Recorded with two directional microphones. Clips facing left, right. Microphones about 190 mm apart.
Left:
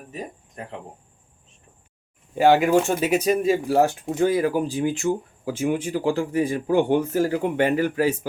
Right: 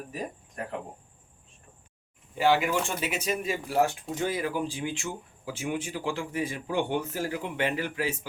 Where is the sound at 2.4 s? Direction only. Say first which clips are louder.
Left 8 dB; 45° left (ahead or behind).